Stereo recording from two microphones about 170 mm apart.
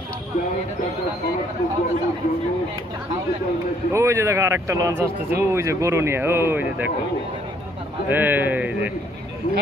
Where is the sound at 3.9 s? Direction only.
15° right (ahead or behind).